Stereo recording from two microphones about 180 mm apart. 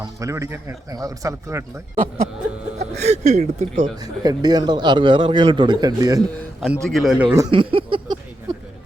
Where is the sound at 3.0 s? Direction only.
40° right (ahead or behind).